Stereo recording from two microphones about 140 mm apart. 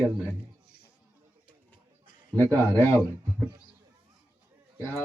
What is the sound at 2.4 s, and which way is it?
Speech, 15° left (ahead or behind).